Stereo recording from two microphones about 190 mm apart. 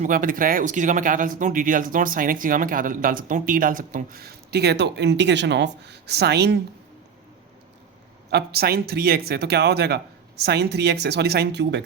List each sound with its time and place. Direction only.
0.0 s speech: 45° right (ahead or behind)
8.3 s speech: 60° right (ahead or behind)